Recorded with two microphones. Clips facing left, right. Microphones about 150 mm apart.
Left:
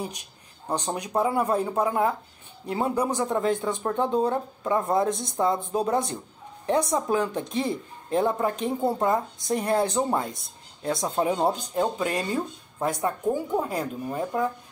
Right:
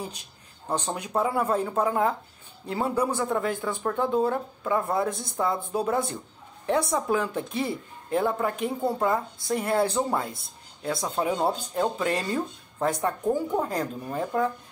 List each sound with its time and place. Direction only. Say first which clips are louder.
0.7 s speech: left 1 dB; 15° left (ahead or behind)